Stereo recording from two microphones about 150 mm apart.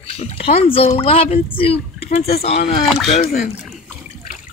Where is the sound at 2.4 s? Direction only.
50° left (ahead or behind).